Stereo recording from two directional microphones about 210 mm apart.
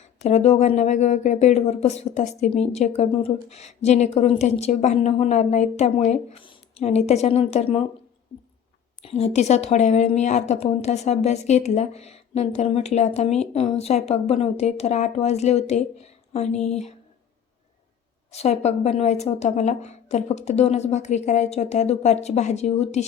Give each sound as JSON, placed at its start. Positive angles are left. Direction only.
{"t": 0.3, "sound": "speech", "side_deg": 30}
{"t": 9.0, "sound": "speech", "side_deg": 30}
{"t": 18.3, "sound": "speech", "side_deg": 30}